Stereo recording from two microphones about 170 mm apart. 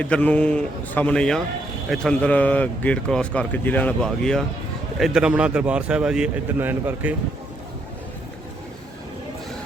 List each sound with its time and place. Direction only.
0.0 s speech: 10° left (ahead or behind); by 7.2 s 10° right (ahead or behind)